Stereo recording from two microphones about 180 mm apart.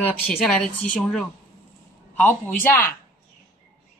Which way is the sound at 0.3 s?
5° left (ahead or behind).